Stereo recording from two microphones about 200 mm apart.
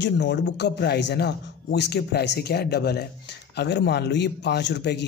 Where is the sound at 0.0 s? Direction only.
60° left (ahead or behind).